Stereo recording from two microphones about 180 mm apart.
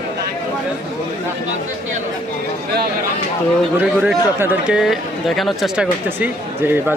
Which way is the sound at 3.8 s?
5° right (ahead or behind).